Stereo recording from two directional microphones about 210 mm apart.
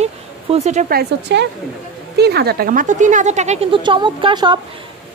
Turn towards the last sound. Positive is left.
turn(degrees=-20)  # may be behind; listen again after turning